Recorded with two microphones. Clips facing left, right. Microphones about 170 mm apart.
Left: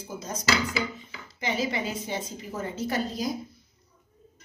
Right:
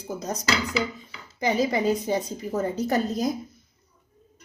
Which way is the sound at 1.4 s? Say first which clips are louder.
Right 6 dB; 40° right (ahead or behind).